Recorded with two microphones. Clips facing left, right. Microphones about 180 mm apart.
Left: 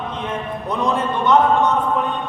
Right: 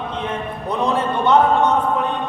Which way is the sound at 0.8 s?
35° right (ahead or behind).